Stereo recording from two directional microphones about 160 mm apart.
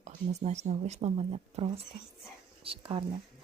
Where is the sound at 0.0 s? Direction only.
45° right (ahead or behind).